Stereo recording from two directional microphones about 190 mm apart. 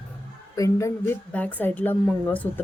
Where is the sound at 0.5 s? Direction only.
15° left (ahead or behind).